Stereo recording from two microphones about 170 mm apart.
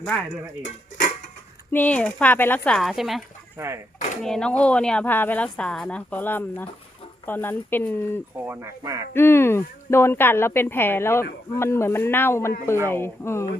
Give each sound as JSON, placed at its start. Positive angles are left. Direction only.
{"t": 1.7, "sound": "speech", "side_deg": 10}
{"t": 8.4, "sound": "speech", "side_deg": -15}
{"t": 9.1, "sound": "speech", "side_deg": 15}